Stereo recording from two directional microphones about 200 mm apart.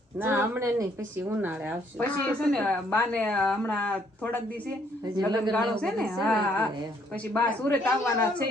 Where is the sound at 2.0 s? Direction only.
5° left (ahead or behind).